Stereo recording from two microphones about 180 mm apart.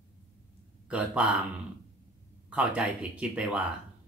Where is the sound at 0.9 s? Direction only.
5° right (ahead or behind).